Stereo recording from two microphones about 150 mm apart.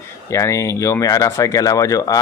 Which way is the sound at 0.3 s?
20° left (ahead or behind).